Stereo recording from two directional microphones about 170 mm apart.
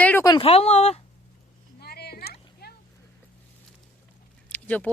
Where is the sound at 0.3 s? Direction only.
30° left (ahead or behind).